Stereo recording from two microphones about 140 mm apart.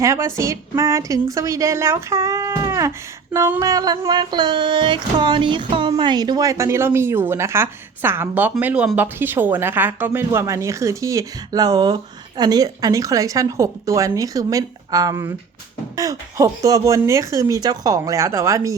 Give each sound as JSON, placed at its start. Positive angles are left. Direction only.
{"t": 0.0, "sound": "music", "side_deg": -20}